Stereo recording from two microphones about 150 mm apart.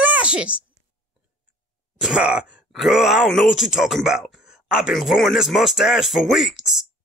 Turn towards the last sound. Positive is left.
turn(degrees=0)  # may be behind; listen again after turning